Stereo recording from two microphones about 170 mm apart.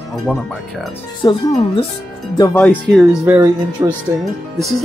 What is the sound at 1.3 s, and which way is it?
Speech, 25° left (ahead or behind).